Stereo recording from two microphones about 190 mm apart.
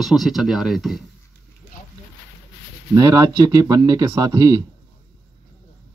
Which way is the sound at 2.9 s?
20° right (ahead or behind).